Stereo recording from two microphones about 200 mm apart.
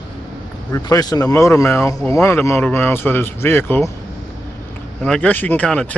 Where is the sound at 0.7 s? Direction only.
20° left (ahead or behind).